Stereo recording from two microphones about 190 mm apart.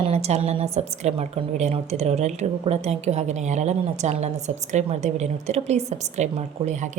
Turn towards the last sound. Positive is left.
turn(degrees=-40)  # may be behind; listen again after turning